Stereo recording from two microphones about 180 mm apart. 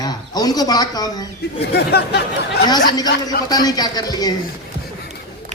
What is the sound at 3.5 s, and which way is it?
Speech, 20° left (ahead or behind).